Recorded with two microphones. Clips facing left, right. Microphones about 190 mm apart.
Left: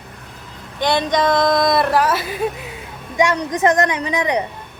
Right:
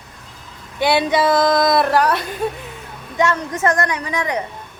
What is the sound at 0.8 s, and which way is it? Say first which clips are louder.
A woman's voice: right 1 dB; 10° right (ahead or behind).